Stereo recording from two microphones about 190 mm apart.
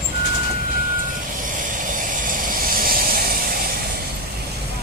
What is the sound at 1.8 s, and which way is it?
Vehicle, 45° right (ahead or behind).